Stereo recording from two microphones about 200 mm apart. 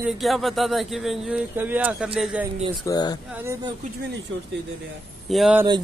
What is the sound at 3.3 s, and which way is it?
Speech, 15° right (ahead or behind).